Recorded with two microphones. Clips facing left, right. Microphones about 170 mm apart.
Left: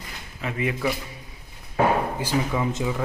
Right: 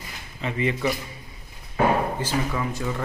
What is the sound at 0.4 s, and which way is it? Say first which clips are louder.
Speech: right 1 dB; 5° left (ahead or behind).